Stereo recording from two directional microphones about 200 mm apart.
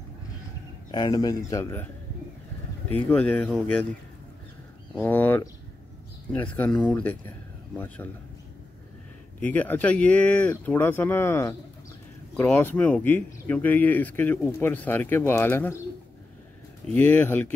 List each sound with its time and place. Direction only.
0.9 s speech: 20° left (ahead or behind)
3.1 s speech: 5° left (ahead or behind)
5.0 s speech: 10° left (ahead or behind)
9.4 s speech: 10° left (ahead or behind)
16.8 s speech: 10° left (ahead or behind)